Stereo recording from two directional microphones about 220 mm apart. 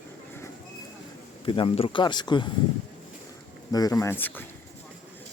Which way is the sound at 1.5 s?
25° left (ahead or behind).